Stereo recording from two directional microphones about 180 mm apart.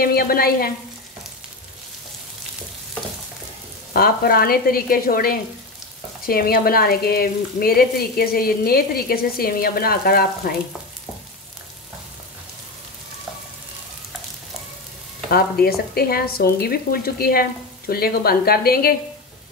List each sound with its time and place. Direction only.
0.0 s speech: 55° left (ahead or behind)
3.9 s speech: 55° left (ahead or behind)
15.6 s speech: 60° left (ahead or behind)